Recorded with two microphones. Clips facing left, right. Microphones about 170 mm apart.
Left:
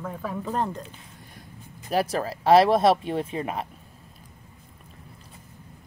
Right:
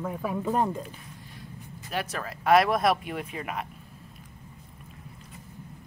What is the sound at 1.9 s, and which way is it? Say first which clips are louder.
Speech: left 8 dB; 35° left (ahead or behind).